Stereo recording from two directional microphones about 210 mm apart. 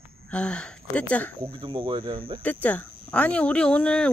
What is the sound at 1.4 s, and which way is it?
Speech, 25° right (ahead or behind).